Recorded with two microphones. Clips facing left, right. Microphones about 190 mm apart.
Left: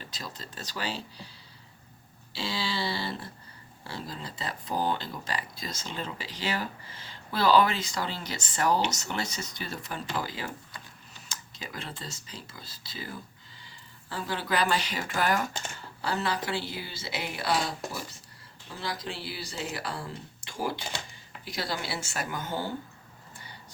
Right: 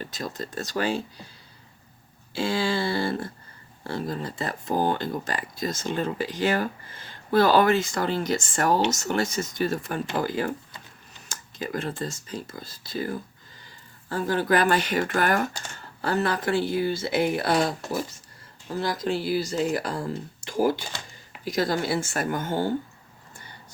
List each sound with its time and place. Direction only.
0.0 s speech: 50° right (ahead or behind)
2.3 s speech: 50° right (ahead or behind)